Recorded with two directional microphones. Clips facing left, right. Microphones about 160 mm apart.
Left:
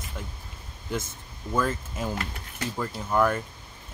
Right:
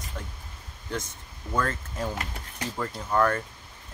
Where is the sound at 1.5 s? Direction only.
5° left (ahead or behind).